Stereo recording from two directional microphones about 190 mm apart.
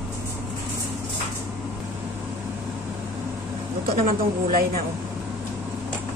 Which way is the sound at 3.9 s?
50° right (ahead or behind).